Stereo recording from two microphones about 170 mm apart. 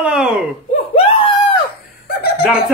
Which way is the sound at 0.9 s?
30° left (ahead or behind).